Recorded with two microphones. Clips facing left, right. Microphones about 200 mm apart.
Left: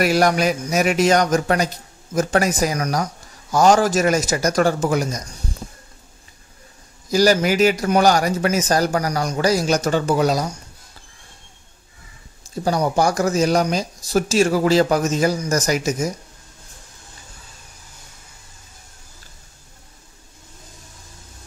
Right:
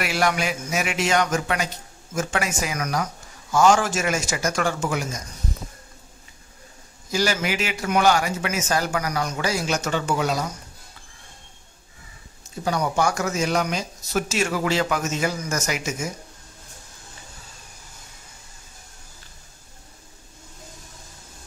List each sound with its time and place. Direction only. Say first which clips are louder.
0.0 s speech: left 7 dB; 40° left (ahead or behind)
7.1 s speech: left 8 dB; 40° left (ahead or behind)
12.6 s speech: left 4 dB; 35° left (ahead or behind)